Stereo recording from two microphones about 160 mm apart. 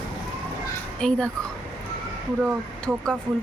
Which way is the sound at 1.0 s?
5° left (ahead or behind).